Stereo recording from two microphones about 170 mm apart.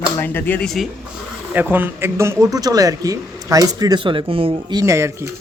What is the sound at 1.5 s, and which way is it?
A man's voice, 10° right (ahead or behind).